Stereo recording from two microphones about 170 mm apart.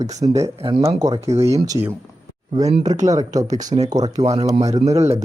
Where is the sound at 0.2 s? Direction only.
20° right (ahead or behind).